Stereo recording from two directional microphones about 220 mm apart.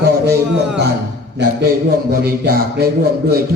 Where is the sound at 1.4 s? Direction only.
55° right (ahead or behind).